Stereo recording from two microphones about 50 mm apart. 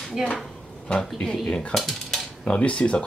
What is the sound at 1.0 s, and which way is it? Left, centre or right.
Speech, centre.